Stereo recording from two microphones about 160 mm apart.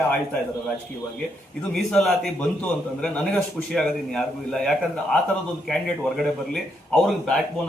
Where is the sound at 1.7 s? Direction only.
Centre (ahead or behind).